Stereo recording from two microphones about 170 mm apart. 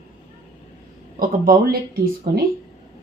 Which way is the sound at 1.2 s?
55° right (ahead or behind).